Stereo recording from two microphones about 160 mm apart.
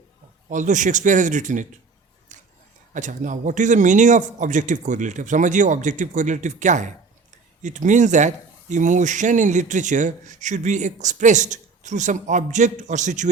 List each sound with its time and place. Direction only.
0.5 s a man's voice: 50° right (ahead or behind)
2.3 s a sound: 50° right (ahead or behind)
2.9 s a man's voice: 55° right (ahead or behind)